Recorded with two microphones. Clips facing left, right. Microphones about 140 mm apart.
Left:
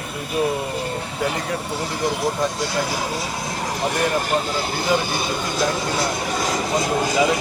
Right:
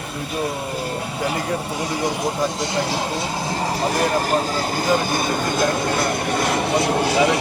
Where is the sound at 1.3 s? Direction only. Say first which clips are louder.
Right 1 dB; 15° right (ahead or behind).